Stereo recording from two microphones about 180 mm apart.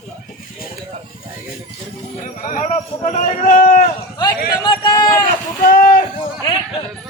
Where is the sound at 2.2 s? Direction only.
50° left (ahead or behind).